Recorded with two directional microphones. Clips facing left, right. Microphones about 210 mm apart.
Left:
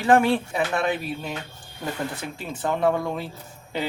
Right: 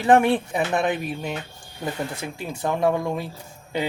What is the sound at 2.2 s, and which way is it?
Speech, 10° right (ahead or behind).